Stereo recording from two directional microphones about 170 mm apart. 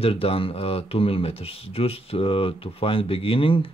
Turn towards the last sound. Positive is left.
turn(degrees=30)  # may be behind; listen again after turning